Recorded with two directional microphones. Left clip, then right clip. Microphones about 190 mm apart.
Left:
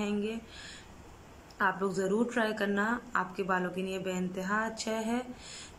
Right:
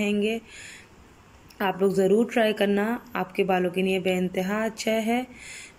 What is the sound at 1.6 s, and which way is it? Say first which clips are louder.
Speech: right 7 dB; 15° right (ahead or behind).